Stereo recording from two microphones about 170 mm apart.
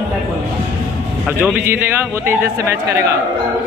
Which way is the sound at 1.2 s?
10° right (ahead or behind).